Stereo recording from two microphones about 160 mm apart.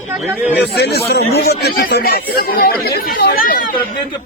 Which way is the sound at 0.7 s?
90° left.